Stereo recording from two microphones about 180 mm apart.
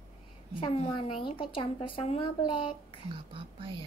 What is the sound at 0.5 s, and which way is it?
A woman's voice, 30° left (ahead or behind).